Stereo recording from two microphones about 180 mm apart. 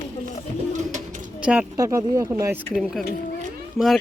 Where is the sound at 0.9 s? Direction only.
45° right (ahead or behind).